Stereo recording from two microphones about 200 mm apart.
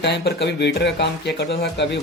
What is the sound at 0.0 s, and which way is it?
Speech, 60° left (ahead or behind).